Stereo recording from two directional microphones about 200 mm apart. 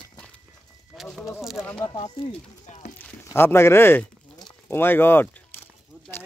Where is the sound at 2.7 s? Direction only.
35° left (ahead or behind).